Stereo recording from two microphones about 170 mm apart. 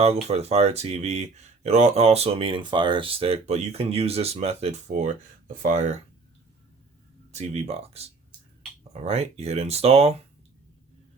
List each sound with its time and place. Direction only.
0.0 s speech: 40° right (ahead or behind)
7.3 s speech: 40° right (ahead or behind)